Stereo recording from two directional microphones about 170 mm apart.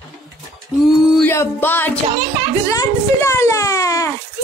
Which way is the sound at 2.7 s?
20° left (ahead or behind).